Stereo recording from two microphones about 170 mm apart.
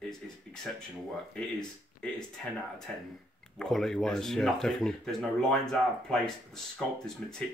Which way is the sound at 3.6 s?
5° left (ahead or behind).